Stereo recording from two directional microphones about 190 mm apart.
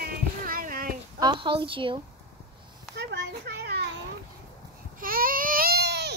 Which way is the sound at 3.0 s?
60° right (ahead or behind).